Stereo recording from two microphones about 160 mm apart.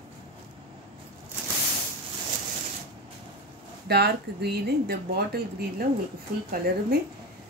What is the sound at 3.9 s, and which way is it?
Speech, 90° right.